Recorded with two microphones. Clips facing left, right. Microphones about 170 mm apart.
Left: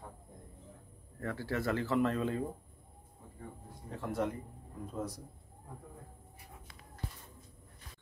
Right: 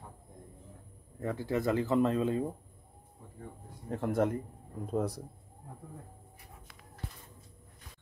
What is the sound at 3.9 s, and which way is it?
Speech, 50° right (ahead or behind).